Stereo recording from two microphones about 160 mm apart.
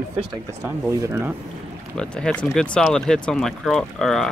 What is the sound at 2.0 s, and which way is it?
Speech, 5° left (ahead or behind).